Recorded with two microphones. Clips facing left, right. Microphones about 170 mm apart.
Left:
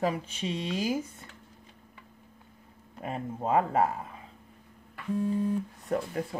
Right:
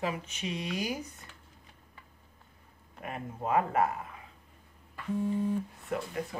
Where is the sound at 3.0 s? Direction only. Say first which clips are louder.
Left 4 dB; 30° left (ahead or behind).